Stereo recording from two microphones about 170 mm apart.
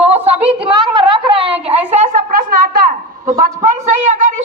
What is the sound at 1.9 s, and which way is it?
A woman's voice, 45° right (ahead or behind).